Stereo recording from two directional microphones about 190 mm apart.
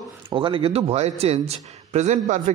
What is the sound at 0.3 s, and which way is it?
A man's voice, 25° right (ahead or behind).